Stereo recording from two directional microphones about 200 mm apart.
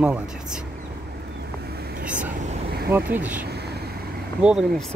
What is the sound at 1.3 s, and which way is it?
Vehicle, 50° right (ahead or behind).